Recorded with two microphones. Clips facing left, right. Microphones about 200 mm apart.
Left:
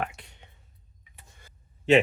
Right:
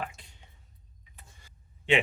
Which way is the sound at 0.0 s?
65° left (ahead or behind).